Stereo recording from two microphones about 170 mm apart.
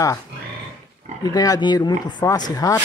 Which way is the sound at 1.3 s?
20° left (ahead or behind).